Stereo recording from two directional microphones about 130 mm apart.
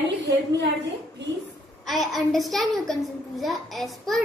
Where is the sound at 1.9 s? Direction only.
Centre (ahead or behind).